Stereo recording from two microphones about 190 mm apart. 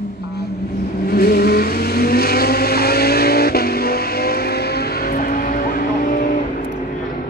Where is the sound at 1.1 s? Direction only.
55° left (ahead or behind).